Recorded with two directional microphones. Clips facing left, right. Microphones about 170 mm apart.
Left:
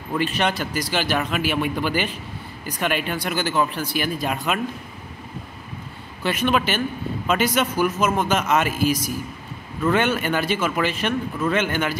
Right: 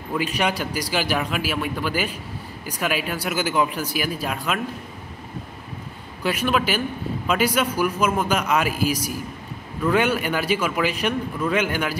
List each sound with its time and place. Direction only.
0.1 s a man's voice: 10° right (ahead or behind)
6.2 s a man's voice: 5° right (ahead or behind)